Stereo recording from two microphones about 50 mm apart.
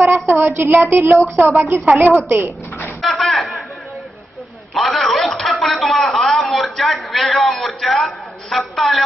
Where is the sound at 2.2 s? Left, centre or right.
Right.